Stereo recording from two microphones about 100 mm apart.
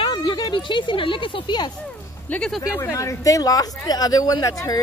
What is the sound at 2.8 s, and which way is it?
Speech, 30° left (ahead or behind).